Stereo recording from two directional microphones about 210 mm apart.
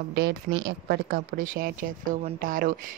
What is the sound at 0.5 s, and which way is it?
Speech, 40° right (ahead or behind).